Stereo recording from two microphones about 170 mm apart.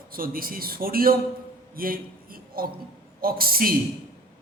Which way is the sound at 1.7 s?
60° right (ahead or behind).